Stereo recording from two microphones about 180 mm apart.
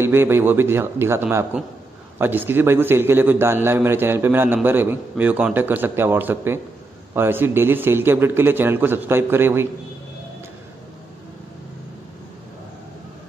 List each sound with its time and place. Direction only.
0.0 s a man's voice: 15° right (ahead or behind)